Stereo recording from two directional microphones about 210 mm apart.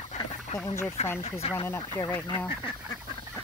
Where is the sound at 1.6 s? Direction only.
10° left (ahead or behind).